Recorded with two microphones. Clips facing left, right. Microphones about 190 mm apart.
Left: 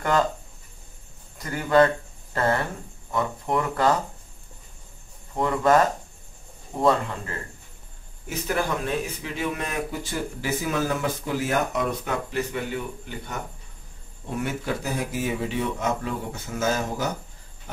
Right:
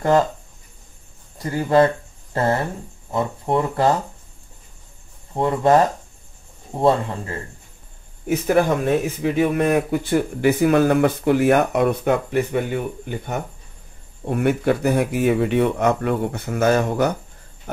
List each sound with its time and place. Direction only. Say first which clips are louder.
1.4 s speech: right 3 dB; 30° right (ahead or behind)
3.1 s speech: right 4 dB; 30° right (ahead or behind)
5.3 s speech: right 4 dB; 30° right (ahead or behind)
8.3 s speech: right 9 dB; 55° right (ahead or behind)